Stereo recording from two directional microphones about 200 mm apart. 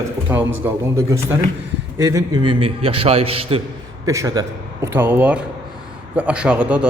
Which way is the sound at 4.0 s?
15° right (ahead or behind).